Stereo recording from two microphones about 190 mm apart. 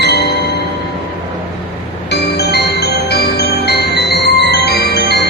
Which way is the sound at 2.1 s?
60° left (ahead or behind).